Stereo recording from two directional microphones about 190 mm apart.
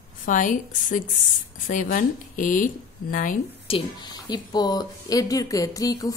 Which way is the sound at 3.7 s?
25° left (ahead or behind).